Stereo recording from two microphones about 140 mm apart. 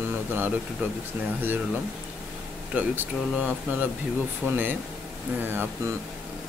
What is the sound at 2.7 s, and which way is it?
Speech, 10° right (ahead or behind).